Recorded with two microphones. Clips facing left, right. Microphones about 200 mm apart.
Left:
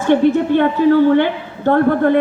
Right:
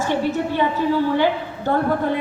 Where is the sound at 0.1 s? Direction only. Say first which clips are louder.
Left 12 dB; 60° left (ahead or behind).